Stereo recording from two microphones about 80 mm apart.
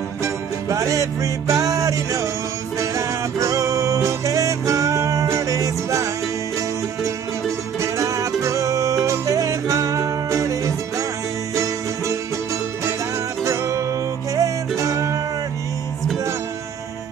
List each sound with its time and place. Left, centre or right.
0.2 s music: right
7.8 s music: right
13.4 s music: right